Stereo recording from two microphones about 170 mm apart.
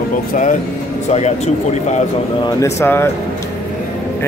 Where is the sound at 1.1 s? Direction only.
40° left (ahead or behind).